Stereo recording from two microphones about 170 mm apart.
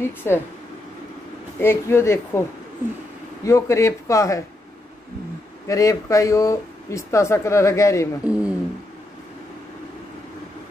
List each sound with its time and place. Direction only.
0.0 s speech: 15° left (ahead or behind)
1.6 s speech: 15° left (ahead or behind)
3.4 s speech: 15° left (ahead or behind)
5.7 s speech: 20° left (ahead or behind)
8.3 s a sound: 5° right (ahead or behind)